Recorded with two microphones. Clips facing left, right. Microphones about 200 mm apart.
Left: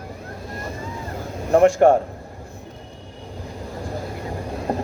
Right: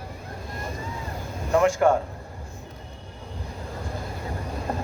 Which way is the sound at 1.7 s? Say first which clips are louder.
Left 6 dB; 35° left (ahead or behind).